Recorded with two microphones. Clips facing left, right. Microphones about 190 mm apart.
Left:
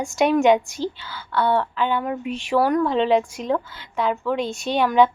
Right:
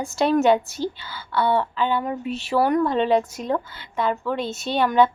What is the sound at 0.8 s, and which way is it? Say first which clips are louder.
A woman's voice: even; 10° right (ahead or behind).